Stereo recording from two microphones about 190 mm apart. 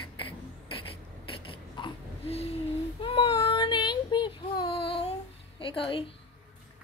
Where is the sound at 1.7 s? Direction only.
30° left (ahead or behind).